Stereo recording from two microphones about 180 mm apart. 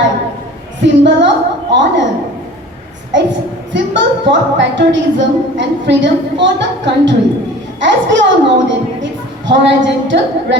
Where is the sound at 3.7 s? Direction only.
85° right.